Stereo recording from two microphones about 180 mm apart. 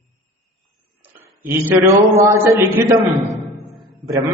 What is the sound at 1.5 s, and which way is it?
A man's voice, 15° right (ahead or behind).